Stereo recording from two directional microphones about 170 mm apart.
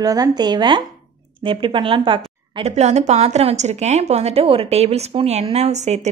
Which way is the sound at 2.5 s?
40° right (ahead or behind).